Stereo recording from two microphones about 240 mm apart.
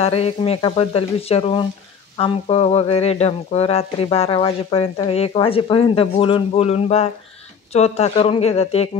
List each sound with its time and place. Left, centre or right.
0.0 s speech: left